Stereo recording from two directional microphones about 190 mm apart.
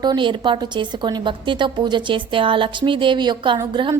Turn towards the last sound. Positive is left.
turn(degrees=-25)  # may be behind; listen again after turning